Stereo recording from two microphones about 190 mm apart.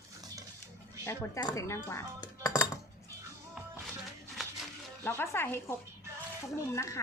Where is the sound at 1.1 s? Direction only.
15° left (ahead or behind).